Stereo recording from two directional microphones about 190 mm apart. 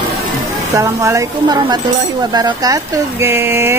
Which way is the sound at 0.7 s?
15° right (ahead or behind).